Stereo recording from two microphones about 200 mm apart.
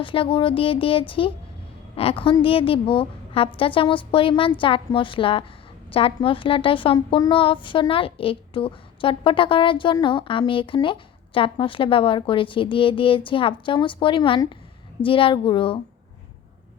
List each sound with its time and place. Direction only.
0.0 s a woman's voice: 25° left (ahead or behind)